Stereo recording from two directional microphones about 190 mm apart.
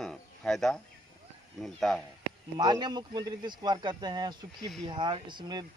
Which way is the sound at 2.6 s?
25° right (ahead or behind).